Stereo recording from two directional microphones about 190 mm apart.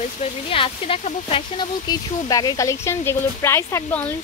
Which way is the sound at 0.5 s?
30° left (ahead or behind).